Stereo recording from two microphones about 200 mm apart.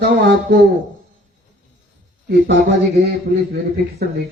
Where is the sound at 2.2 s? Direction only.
55° right (ahead or behind).